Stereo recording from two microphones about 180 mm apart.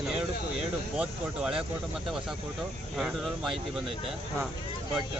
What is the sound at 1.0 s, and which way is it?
Speech, 5° right (ahead or behind).